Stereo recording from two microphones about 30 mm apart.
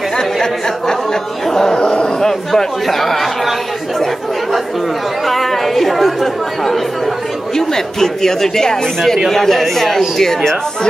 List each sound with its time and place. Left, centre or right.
0.2 s speech: centre
1.8 s a man's voice: left
2.1 s speech: centre
5.2 s speech: centre
7.5 s speech: centre
9.3 s speech: centre